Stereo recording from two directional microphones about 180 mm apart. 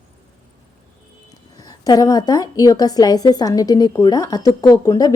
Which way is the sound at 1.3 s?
20° left (ahead or behind).